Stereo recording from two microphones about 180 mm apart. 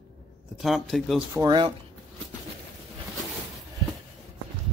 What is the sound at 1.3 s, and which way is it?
Speech, 20° right (ahead or behind).